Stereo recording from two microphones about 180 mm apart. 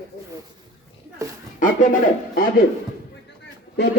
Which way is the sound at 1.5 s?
45° left (ahead or behind).